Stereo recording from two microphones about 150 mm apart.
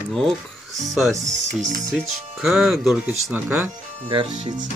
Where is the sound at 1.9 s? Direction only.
5° right (ahead or behind).